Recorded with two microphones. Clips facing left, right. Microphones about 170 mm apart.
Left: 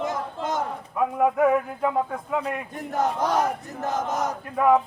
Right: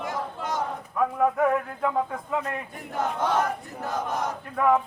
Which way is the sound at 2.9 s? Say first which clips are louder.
Left 2 dB; 40° left (ahead or behind).